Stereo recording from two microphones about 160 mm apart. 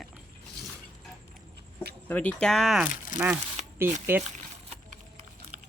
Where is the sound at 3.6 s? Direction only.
45° right (ahead or behind).